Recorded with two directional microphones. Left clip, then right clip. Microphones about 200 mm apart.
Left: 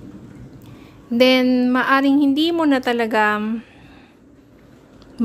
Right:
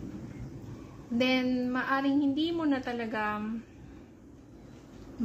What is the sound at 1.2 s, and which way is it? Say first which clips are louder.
A woman's voice: left 14 dB; 55° left (ahead or behind).